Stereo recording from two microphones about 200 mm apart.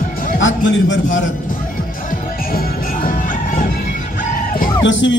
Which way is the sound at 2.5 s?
45° left (ahead or behind).